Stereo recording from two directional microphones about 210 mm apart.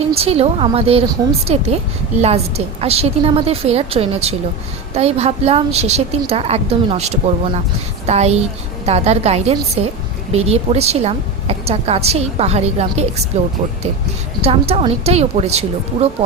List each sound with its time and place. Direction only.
0.2 s a woman's voice: 30° right (ahead or behind)
14.4 s a woman's voice: 30° right (ahead or behind)